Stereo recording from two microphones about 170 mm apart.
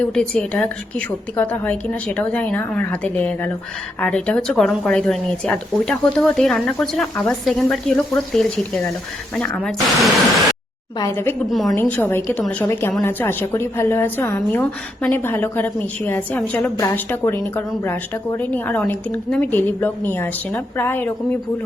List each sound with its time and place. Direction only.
0.0 s a woman's voice: 5° left (ahead or behind)
10.9 s a woman's voice: 15° left (ahead or behind)
11.4 s a woman's voice: centre (ahead or behind)